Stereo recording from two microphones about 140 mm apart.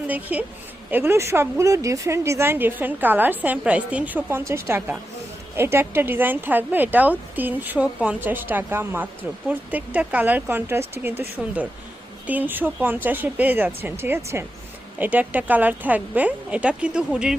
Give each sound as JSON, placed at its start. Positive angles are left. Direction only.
{"t": 0.1, "sound": "speech", "side_deg": -10}